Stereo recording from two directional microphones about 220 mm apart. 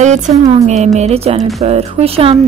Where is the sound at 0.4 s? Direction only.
30° right (ahead or behind).